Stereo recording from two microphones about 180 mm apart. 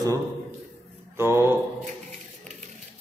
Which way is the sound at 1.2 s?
15° right (ahead or behind).